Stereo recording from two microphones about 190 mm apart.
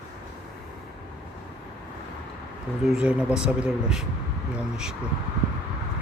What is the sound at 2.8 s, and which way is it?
Speech, 5° right (ahead or behind).